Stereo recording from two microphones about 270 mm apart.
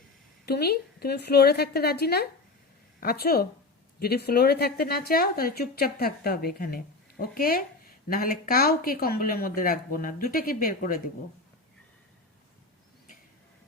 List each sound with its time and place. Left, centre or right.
0.4 s a woman's voice: left